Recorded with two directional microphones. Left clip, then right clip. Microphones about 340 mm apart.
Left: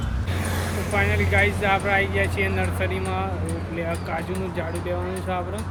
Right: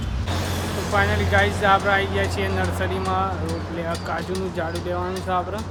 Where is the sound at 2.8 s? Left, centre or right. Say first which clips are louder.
Right 1 dB; centre.